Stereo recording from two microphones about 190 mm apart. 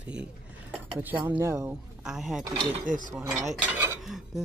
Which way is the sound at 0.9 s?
10° right (ahead or behind).